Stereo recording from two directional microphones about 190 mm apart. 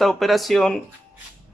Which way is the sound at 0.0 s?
Centre (ahead or behind).